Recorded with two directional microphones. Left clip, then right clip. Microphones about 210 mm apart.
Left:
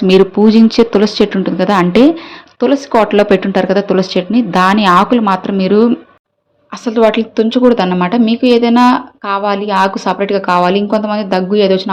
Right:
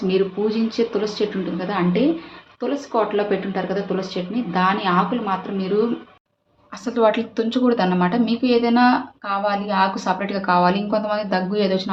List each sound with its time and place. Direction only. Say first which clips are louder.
0.1 s speech: left 13 dB; 50° left (ahead or behind)
6.8 s a woman's voice: left 7 dB; 30° left (ahead or behind)